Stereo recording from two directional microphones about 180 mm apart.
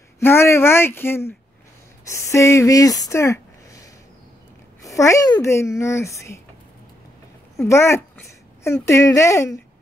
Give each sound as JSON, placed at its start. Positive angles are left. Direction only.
{"t": 0.2, "sound": "speech", "side_deg": 15}
{"t": 7.6, "sound": "speech", "side_deg": 15}